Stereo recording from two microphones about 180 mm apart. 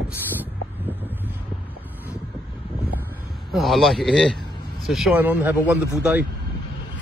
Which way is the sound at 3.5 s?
Centre (ahead or behind).